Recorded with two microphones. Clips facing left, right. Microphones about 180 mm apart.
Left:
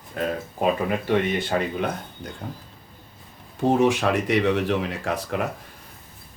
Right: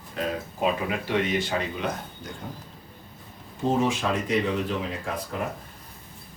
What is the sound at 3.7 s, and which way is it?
Speech, 70° left (ahead or behind).